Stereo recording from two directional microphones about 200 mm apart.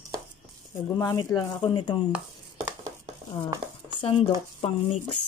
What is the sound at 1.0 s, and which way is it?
Speech, 15° left (ahead or behind).